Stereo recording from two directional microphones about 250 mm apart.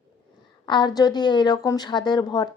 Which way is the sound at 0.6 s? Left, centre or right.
Centre.